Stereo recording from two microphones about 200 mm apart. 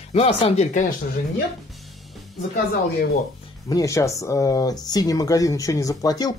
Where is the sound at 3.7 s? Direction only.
15° left (ahead or behind).